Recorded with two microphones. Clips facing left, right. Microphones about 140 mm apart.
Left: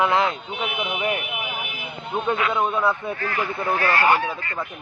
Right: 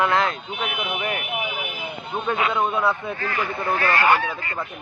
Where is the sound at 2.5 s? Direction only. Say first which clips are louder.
Even; centre (ahead or behind).